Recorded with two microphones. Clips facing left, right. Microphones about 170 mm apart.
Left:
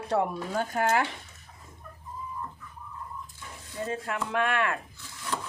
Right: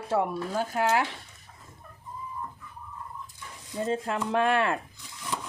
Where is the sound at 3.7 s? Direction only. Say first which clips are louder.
Right 4 dB; 20° right (ahead or behind).